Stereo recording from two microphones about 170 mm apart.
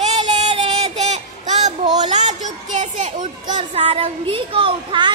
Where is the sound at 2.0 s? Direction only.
45° right (ahead or behind).